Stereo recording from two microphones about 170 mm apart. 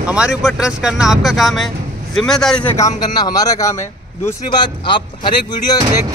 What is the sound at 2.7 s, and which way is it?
A man's voice, 20° left (ahead or behind).